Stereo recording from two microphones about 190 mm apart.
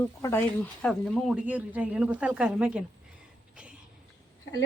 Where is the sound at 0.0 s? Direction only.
10° left (ahead or behind); by 2.8 s 5° right (ahead or behind).